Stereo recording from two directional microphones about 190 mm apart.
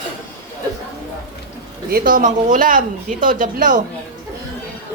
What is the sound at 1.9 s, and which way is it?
Speech, 50° right (ahead or behind).